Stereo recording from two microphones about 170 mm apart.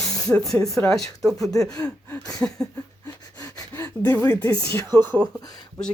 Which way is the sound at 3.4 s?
15° left (ahead or behind).